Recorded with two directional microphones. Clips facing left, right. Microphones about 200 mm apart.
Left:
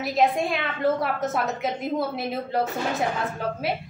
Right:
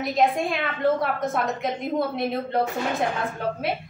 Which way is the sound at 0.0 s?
Centre (ahead or behind).